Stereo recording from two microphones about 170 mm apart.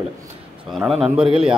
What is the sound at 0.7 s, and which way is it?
Speech, centre (ahead or behind).